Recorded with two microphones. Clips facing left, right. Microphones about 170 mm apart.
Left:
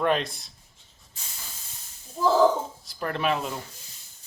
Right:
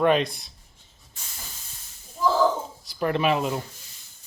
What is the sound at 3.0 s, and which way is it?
Speech, 5° right (ahead or behind).